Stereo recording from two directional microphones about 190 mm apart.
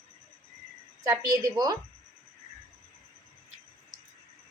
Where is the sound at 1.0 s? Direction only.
15° right (ahead or behind).